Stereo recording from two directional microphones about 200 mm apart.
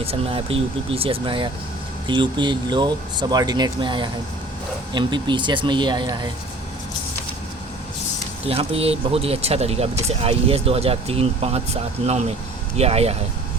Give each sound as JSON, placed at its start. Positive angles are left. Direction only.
{"t": 0.0, "sound": "speech", "side_deg": -30}
{"t": 8.4, "sound": "speech", "side_deg": -30}